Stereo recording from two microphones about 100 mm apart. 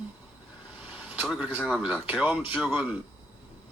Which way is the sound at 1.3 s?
15° right (ahead or behind).